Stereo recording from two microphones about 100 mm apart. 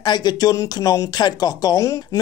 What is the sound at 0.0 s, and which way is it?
Speech, 45° left (ahead or behind).